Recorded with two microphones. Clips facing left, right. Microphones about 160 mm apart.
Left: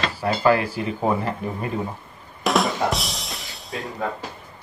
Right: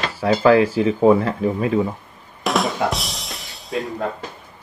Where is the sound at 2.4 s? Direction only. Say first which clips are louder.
Right 1 dB; centre (ahead or behind).